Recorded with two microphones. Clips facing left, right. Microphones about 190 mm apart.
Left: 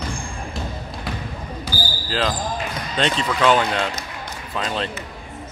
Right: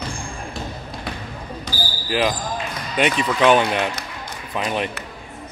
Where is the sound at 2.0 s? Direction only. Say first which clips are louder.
Right 3 dB; 15° right (ahead or behind).